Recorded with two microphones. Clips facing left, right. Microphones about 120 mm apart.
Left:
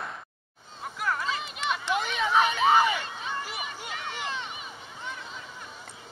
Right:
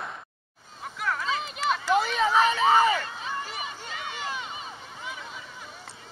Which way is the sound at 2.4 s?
35° right (ahead or behind).